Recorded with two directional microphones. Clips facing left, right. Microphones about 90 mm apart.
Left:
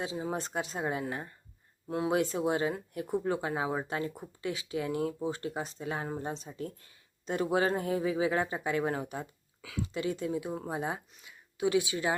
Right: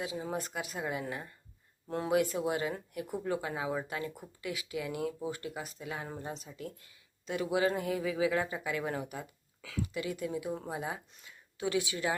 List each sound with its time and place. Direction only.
0.0 s speech: 25° left (ahead or behind)
2.0 s speech: 25° left (ahead or behind)